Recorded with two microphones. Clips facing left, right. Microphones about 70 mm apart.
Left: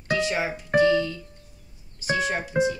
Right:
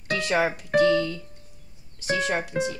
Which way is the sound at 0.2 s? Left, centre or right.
Right.